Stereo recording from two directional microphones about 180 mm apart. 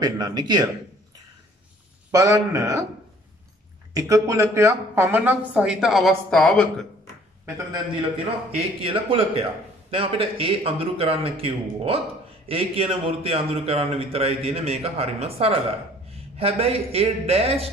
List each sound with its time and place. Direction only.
0.0 s a man's voice: 20° right (ahead or behind)
2.0 s a man's voice: 15° right (ahead or behind)
3.9 s speech: 20° right (ahead or behind); by 6.9 s 5° left (ahead or behind)
8.5 s a man's voice: 30° right (ahead or behind)